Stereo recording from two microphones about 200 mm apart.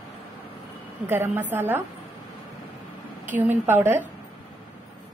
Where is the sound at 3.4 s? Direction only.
10° right (ahead or behind).